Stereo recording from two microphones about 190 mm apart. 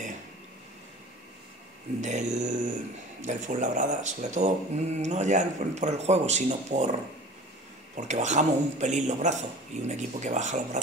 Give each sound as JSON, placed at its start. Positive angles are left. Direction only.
{"t": 2.0, "sound": "speech", "side_deg": -40}